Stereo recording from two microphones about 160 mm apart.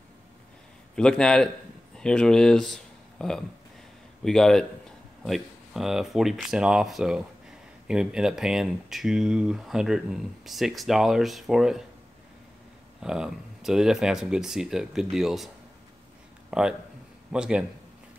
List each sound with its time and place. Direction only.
0.9 s speech: 5° left (ahead or behind)
13.0 s speech: 5° right (ahead or behind)
16.4 s a sound: 5° right (ahead or behind)
17.3 s speech: 5° right (ahead or behind)